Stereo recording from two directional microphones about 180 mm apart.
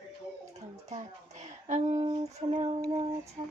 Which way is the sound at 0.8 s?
40° right (ahead or behind).